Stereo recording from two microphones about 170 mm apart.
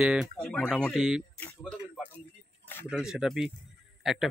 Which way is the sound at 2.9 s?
5° right (ahead or behind).